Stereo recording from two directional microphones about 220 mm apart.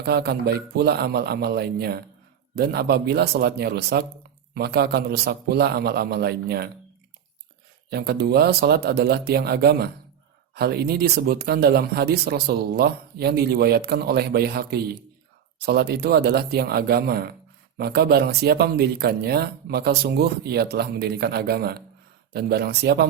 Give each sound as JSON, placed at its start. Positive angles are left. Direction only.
{"t": 0.0, "sound": "speech", "side_deg": -45}
{"t": 7.9, "sound": "speech", "side_deg": -45}